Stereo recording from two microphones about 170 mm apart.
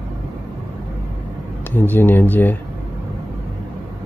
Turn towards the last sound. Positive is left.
turn(degrees=10)  # may be behind; listen again after turning